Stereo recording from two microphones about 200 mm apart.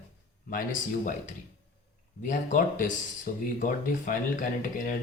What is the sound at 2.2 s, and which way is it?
Speech, 40° left (ahead or behind).